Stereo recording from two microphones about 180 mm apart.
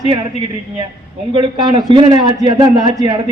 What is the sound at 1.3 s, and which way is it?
A man's voice, 25° right (ahead or behind).